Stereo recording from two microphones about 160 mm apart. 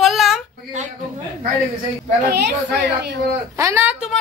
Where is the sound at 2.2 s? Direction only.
90° right.